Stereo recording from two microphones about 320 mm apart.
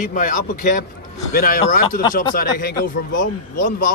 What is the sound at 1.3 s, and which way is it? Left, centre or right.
Speech, left.